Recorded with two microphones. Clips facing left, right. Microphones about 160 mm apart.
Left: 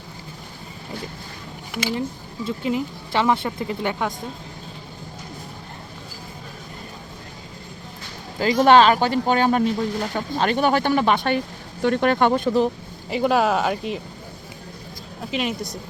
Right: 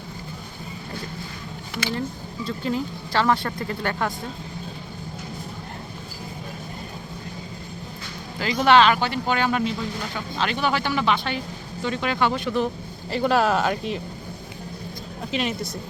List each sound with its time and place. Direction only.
1.7 s speech: 10° left (ahead or behind)
8.4 s speech: 45° left (ahead or behind)
13.1 s speech: 10° left (ahead or behind)
15.3 s speech: 5° left (ahead or behind)